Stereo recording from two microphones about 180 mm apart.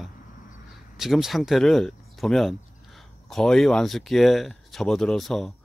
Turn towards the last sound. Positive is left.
turn(degrees=0)  # may be behind; listen again after turning